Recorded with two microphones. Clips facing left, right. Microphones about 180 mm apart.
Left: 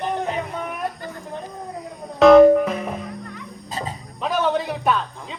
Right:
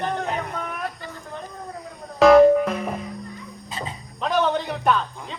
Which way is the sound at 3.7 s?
40° left (ahead or behind).